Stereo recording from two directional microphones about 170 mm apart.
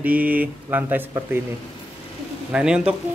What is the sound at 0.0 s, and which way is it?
Speech, 10° right (ahead or behind).